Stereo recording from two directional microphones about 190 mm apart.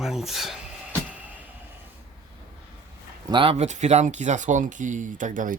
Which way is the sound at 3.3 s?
30° right (ahead or behind).